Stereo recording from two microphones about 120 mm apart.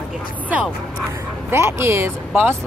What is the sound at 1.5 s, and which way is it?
Speech, 20° right (ahead or behind).